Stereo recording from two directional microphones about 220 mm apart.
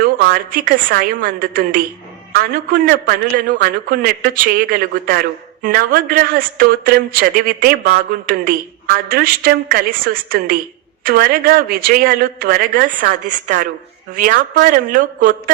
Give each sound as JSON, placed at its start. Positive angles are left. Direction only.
{"t": 0.0, "sound": "speech", "side_deg": -40}